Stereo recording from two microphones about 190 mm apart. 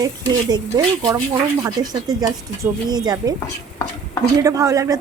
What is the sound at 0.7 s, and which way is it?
Speech, 20° right (ahead or behind).